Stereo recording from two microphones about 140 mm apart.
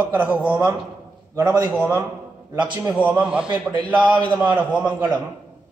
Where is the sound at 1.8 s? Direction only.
10° right (ahead or behind).